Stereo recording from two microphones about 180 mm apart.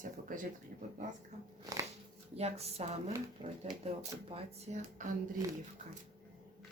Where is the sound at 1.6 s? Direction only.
20° right (ahead or behind).